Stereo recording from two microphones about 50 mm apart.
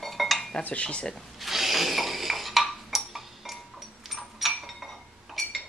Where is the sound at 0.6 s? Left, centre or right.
Left.